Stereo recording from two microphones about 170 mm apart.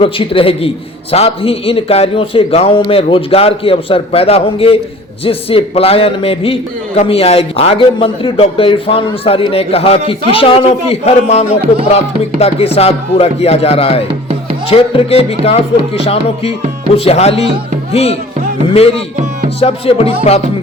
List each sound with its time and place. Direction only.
0.0 s a man's voice: 30° left (ahead or behind)